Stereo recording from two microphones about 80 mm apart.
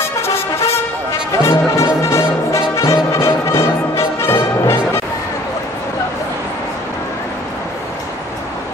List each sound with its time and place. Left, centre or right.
0.2 s brass instrument: left
3.1 s music: left